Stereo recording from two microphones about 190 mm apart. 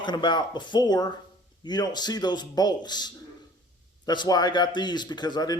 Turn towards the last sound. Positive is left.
turn(degrees=20)  # may be behind; listen again after turning